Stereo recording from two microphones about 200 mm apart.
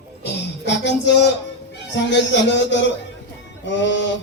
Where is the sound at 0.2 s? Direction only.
60° left (ahead or behind).